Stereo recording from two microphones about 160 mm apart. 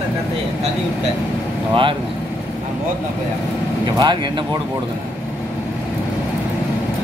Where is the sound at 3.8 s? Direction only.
25° right (ahead or behind).